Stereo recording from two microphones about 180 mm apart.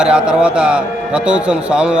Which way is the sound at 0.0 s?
5° right (ahead or behind).